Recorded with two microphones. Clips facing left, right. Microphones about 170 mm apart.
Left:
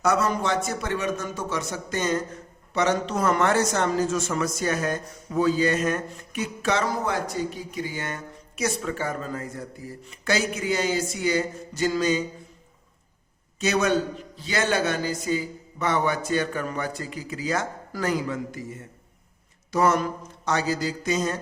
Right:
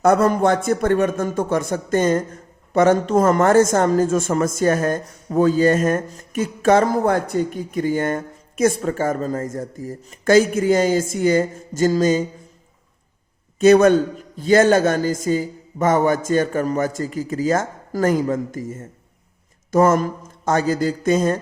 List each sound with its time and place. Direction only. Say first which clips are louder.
0.0 s a man's voice: right 8 dB; 50° right (ahead or behind)
13.6 s a man's voice: right 11 dB; 50° right (ahead or behind)